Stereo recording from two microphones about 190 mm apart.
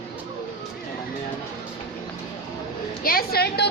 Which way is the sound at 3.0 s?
55° left (ahead or behind).